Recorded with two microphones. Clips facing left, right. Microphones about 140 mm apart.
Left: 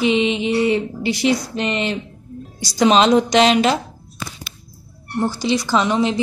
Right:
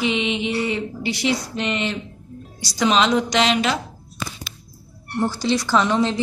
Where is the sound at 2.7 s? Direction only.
30° left (ahead or behind).